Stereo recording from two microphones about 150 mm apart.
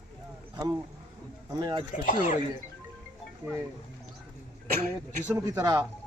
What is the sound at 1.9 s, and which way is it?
Speech, 60° left (ahead or behind).